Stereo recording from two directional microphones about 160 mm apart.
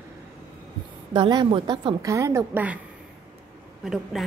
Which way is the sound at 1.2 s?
30° right (ahead or behind).